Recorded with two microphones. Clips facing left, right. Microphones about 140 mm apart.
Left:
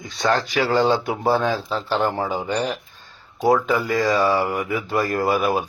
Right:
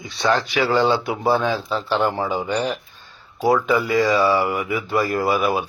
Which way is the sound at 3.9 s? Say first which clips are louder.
Right 1 dB; 45° left (ahead or behind).